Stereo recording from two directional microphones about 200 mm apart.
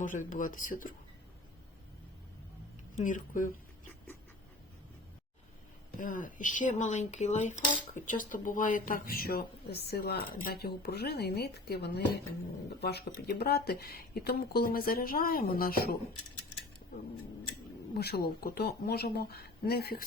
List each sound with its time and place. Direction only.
0.0 s speech: 40° left (ahead or behind)
2.9 s speech: 40° left (ahead or behind)
6.0 s speech: 40° left (ahead or behind)
18.0 s speech: 50° left (ahead or behind)